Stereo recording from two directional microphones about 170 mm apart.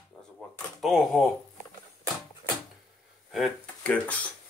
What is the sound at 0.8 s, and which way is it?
Speech, centre (ahead or behind).